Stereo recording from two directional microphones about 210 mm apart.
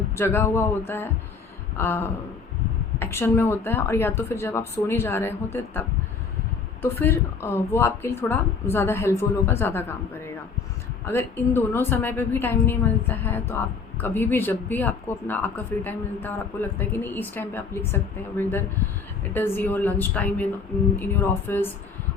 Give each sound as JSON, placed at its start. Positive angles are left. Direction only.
{"t": 0.2, "sound": "speech", "side_deg": 10}
{"t": 6.8, "sound": "speech", "side_deg": 10}